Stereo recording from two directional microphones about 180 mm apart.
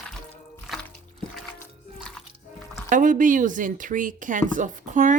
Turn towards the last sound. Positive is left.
turn(degrees=-45)  # may be behind; listen again after turning